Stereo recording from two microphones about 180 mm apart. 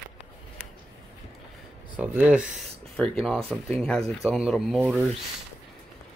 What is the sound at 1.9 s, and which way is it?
Speech, 10° right (ahead or behind).